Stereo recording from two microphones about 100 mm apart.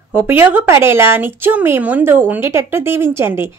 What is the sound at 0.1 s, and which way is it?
Speech, 20° right (ahead or behind).